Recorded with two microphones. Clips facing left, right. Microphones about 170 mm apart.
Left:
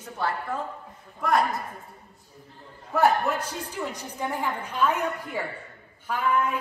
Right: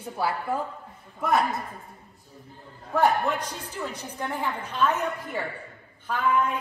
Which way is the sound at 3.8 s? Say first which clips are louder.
Left 1 dB; 10° left (ahead or behind).